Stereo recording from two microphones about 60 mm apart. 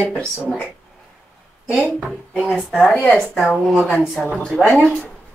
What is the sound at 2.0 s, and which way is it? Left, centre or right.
Speech, centre.